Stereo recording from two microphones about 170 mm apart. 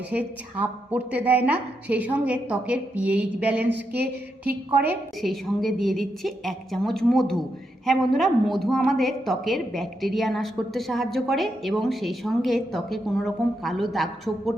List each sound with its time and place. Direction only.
0.1 s a woman's voice: 10° right (ahead or behind)
5.2 s a woman's voice: centre (ahead or behind)